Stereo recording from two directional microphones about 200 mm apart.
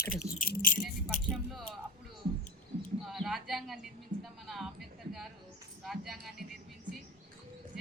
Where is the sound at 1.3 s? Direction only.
Centre (ahead or behind).